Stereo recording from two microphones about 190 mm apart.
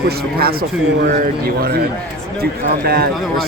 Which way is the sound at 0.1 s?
55° right (ahead or behind).